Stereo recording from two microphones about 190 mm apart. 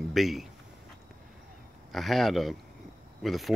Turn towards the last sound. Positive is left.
turn(degrees=0)  # may be behind; listen again after turning